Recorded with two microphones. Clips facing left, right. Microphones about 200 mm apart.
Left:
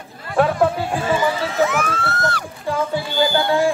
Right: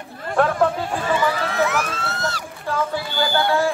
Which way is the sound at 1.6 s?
55° left (ahead or behind).